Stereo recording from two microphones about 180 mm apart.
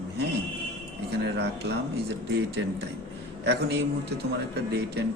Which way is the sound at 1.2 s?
65° right (ahead or behind).